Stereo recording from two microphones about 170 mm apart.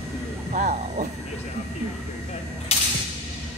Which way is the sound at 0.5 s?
45° right (ahead or behind).